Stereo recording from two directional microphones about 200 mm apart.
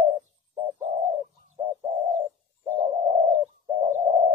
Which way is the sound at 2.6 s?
35° right (ahead or behind).